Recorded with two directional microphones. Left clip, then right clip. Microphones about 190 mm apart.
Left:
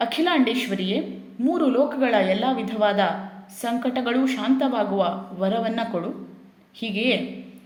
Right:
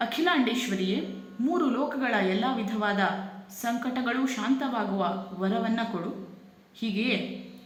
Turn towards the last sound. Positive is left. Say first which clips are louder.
# left 6 dB
turn(degrees=30)  # may be behind; listen again after turning